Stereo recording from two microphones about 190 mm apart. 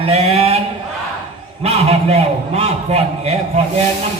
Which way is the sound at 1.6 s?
35° right (ahead or behind).